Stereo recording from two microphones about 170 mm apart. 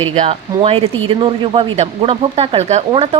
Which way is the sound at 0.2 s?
35° right (ahead or behind).